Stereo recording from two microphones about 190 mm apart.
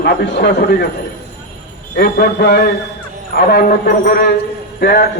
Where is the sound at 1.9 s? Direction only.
55° left (ahead or behind).